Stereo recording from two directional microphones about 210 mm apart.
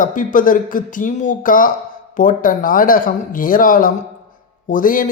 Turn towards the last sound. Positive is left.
turn(degrees=40)  # may be behind; listen again after turning